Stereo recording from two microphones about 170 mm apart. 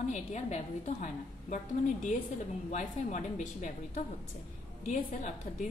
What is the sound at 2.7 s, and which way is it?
A woman's voice, 45° left (ahead or behind).